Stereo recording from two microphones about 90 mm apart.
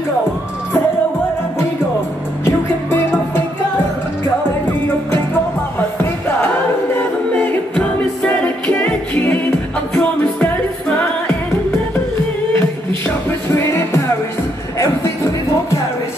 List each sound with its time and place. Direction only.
2.4 s music: 25° left (ahead or behind)
7.3 s music: 15° left (ahead or behind)